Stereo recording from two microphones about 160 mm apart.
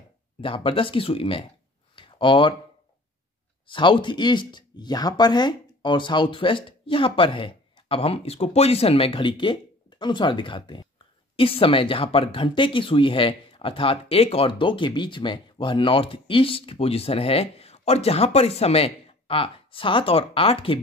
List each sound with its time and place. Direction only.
0.4 s speech: 35° left (ahead or behind)
2.0 s a sound: 30° left (ahead or behind)
3.6 s speech: 30° left (ahead or behind)